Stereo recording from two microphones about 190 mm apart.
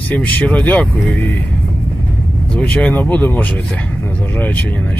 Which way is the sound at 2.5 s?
5° left (ahead or behind).